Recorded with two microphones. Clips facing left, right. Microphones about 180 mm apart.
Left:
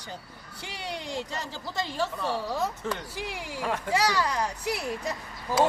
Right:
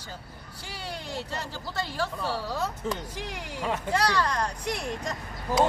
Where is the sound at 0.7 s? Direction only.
15° left (ahead or behind).